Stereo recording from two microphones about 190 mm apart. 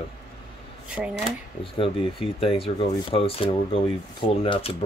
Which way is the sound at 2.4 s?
30° left (ahead or behind).